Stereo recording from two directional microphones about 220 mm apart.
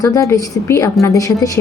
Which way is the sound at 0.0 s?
15° left (ahead or behind).